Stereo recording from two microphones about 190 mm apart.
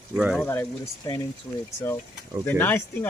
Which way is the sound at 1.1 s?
20° left (ahead or behind).